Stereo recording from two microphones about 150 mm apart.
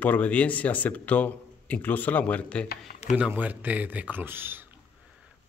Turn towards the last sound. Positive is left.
turn(degrees=-15)  # may be behind; listen again after turning